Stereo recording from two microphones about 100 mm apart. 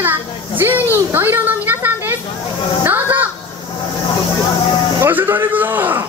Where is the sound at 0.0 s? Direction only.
20° right (ahead or behind).